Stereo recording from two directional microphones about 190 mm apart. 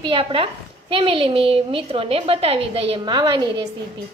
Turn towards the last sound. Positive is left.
turn(degrees=-25)  # may be behind; listen again after turning